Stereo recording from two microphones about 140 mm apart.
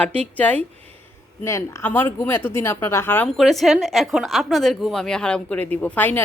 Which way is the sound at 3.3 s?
Centre (ahead or behind).